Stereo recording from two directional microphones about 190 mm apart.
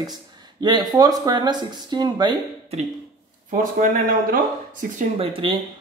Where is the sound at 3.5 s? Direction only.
50° right (ahead or behind).